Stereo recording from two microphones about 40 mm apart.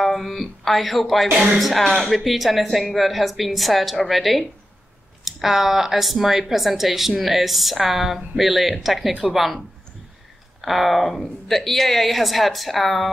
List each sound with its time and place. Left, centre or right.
0.0 s a woman's voice: centre
10.6 s speech: centre